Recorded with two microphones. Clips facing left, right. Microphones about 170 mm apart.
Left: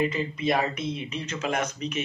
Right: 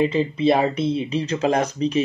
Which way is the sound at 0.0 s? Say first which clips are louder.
Right 8 dB; 30° right (ahead or behind).